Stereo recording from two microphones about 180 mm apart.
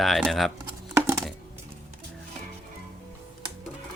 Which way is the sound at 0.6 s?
15° right (ahead or behind).